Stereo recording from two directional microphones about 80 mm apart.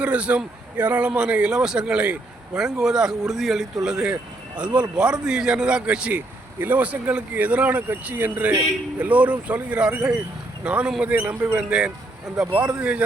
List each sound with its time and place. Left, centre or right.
0.0 s speech: centre